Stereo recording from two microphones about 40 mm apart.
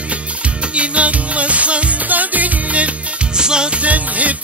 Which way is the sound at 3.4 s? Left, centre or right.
Right.